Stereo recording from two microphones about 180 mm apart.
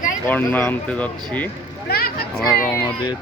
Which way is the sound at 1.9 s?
60° left (ahead or behind).